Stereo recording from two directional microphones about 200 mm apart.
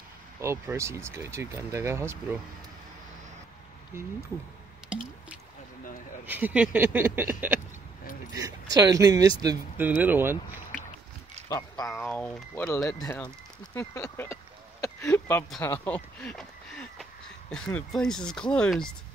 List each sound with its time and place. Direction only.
0.4 s speech: 15° right (ahead or behind)
3.9 s speech: 15° right (ahead or behind)
6.2 s speech: 10° right (ahead or behind)
8.3 s a sound: 20° right (ahead or behind)
8.7 s speech: 20° right (ahead or behind)
11.4 s speech: 15° left (ahead or behind)
13.7 s a sound: 15° left (ahead or behind)
17.7 s speech: 5° left (ahead or behind)